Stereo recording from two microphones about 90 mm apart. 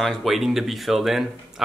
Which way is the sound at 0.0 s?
Centre (ahead or behind).